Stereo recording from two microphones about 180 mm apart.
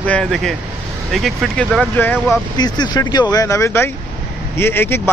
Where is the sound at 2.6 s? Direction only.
25° left (ahead or behind).